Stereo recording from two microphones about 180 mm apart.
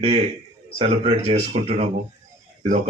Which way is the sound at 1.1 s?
35° right (ahead or behind).